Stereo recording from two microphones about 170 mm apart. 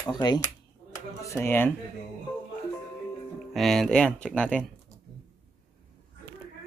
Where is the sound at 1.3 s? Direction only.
10° left (ahead or behind).